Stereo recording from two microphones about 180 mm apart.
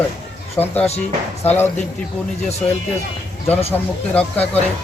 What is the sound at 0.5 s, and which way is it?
Speech, 10° left (ahead or behind).